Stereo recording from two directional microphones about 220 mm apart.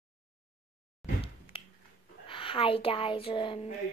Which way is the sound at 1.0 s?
Centre (ahead or behind).